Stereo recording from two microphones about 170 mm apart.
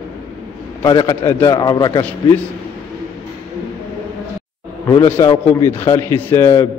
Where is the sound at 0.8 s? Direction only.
25° left (ahead or behind).